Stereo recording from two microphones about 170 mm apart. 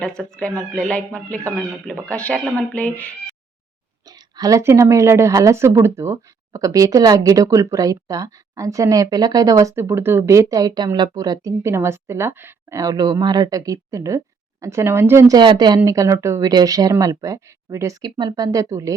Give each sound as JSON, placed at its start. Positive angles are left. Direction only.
{"t": 0.0, "sound": "speech", "side_deg": 5}
{"t": 4.1, "sound": "a woman's voice", "side_deg": -20}